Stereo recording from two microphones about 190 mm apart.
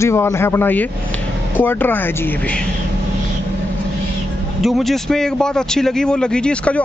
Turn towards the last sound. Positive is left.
turn(degrees=5)  # may be behind; listen again after turning